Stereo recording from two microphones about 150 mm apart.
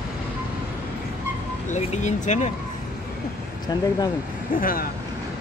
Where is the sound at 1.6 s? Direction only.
55° left (ahead or behind).